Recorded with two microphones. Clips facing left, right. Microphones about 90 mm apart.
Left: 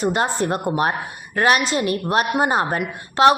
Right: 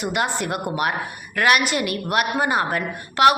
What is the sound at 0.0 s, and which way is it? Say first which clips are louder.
A woman's voice: left 3 dB; 35° left (ahead or behind).